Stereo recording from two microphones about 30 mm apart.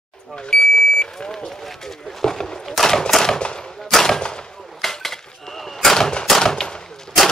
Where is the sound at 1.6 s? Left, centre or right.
Centre.